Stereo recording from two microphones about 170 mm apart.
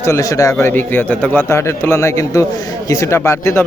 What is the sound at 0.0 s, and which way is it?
A man's voice, 20° left (ahead or behind).